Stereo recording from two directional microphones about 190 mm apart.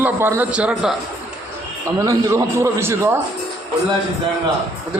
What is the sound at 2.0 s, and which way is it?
Speech, 15° right (ahead or behind).